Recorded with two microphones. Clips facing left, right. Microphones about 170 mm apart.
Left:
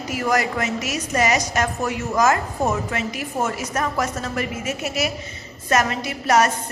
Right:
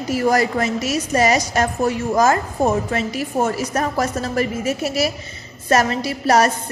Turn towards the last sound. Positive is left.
turn(degrees=-35)  # may be behind; listen again after turning